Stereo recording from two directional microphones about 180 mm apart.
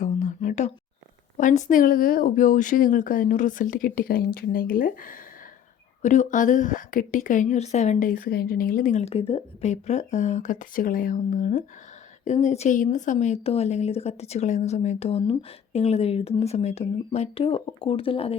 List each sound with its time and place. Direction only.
0.0 s whispering: 45° left (ahead or behind)
1.4 s a woman's voice: 45° left (ahead or behind)